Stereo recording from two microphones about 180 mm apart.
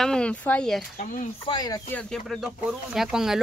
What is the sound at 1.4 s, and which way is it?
Speech, 25° left (ahead or behind).